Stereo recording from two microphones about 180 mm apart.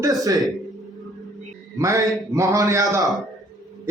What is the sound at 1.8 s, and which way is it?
A man's voice, 20° right (ahead or behind).